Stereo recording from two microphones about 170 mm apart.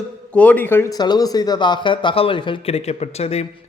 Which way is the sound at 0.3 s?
10° left (ahead or behind).